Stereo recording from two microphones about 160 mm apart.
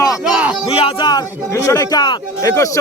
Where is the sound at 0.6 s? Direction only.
35° left (ahead or behind).